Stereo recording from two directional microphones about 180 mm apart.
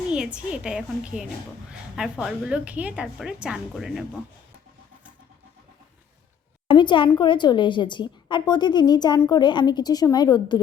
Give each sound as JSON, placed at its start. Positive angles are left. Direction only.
{"t": 0.1, "sound": "a woman's voice", "side_deg": -5}
{"t": 6.7, "sound": "a sound", "side_deg": 25}
{"t": 7.2, "sound": "a woman's voice", "side_deg": 25}